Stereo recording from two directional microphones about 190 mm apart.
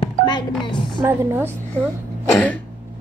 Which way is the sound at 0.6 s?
25° left (ahead or behind).